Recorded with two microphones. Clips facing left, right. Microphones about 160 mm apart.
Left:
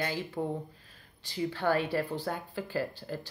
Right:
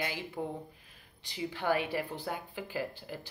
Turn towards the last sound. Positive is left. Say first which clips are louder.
# left 3 dB
turn(degrees=-15)  # may be behind; listen again after turning